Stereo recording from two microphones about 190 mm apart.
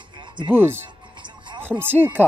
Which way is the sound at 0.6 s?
10° right (ahead or behind).